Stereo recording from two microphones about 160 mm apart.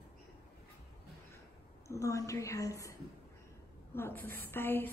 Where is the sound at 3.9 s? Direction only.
15° left (ahead or behind).